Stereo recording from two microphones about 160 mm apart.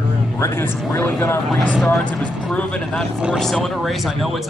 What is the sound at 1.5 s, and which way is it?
Speech, centre (ahead or behind).